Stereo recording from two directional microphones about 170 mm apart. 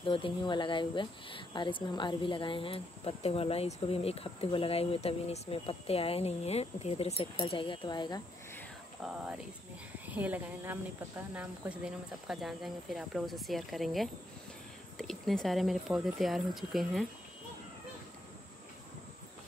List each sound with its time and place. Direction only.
0.0 s speech: 30° left (ahead or behind)
9.0 s speech: 5° right (ahead or behind)